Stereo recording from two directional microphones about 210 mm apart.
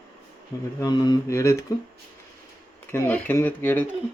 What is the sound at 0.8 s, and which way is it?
Mantra, 20° left (ahead or behind).